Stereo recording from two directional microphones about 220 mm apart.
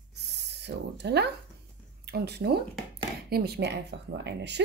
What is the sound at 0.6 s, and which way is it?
A woman's voice, 50° right (ahead or behind).